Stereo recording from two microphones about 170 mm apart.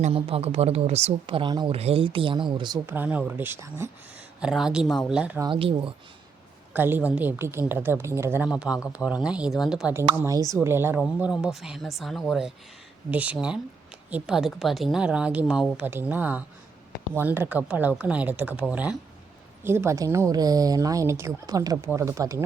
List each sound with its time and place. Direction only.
0.0 s speech: 35° right (ahead or behind)
2.9 s a woman's voice: 10° right (ahead or behind)
5.4 s speech: 30° right (ahead or behind)
6.7 s a woman's voice: 10° right (ahead or behind)